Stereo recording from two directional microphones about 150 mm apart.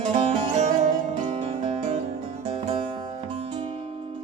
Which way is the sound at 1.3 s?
45° right (ahead or behind).